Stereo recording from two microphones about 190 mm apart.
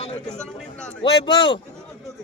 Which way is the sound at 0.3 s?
5° left (ahead or behind).